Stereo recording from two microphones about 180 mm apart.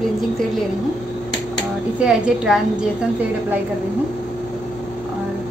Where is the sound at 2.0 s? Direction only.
5° right (ahead or behind).